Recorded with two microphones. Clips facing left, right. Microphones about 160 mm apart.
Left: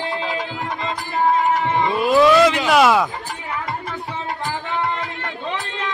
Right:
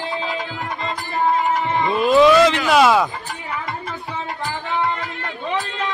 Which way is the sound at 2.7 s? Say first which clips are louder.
Even; centre (ahead or behind).